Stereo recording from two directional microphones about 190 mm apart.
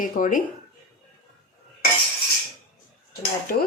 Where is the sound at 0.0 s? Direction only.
45° left (ahead or behind).